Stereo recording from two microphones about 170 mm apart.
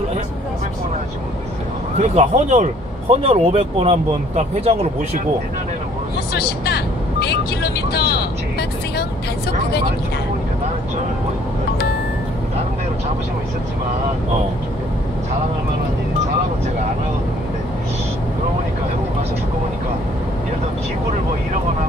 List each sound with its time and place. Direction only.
2.0 s speech: 40° right (ahead or behind)
6.3 s speech: 65° left (ahead or behind)